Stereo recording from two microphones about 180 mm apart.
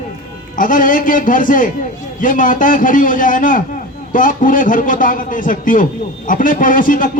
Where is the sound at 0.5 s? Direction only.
45° left (ahead or behind).